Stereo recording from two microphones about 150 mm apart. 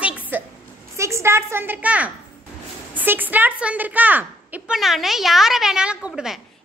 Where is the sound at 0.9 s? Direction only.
20° right (ahead or behind).